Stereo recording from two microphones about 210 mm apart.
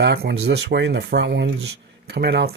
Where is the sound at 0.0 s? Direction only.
50° right (ahead or behind).